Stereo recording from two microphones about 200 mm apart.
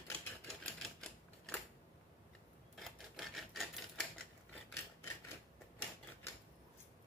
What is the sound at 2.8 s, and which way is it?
Typewriter, centre (ahead or behind).